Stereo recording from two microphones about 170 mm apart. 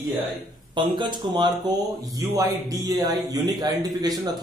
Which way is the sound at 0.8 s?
25° right (ahead or behind).